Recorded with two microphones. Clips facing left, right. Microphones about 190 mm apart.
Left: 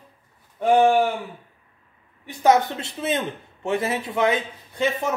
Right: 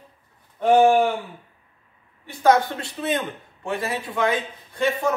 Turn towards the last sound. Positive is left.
turn(degrees=20)  # may be behind; listen again after turning